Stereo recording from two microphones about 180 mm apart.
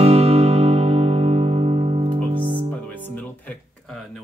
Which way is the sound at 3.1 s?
10° left (ahead or behind).